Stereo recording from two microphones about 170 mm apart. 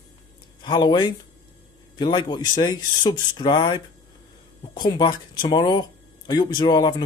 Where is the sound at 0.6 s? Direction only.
25° left (ahead or behind).